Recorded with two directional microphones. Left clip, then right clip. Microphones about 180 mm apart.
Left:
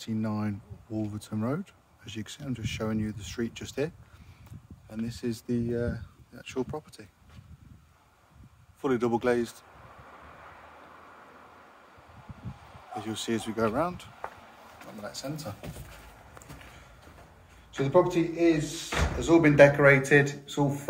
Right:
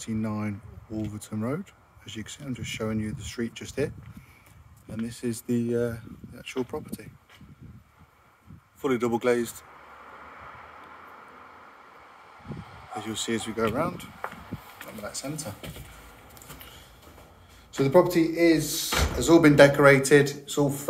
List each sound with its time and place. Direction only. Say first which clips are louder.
0.0 s speech: right 1 dB; centre (ahead or behind)
5.6 s speech: right 6 dB; 20° right (ahead or behind)
8.8 s speech: right 2 dB; centre (ahead or behind)
12.9 s speech: right 2 dB; centre (ahead or behind)
15.0 s speech: right 2 dB; 10° right (ahead or behind)
17.7 s speech: right 3 dB; 50° right (ahead or behind)
19.5 s speech: even; 20° right (ahead or behind)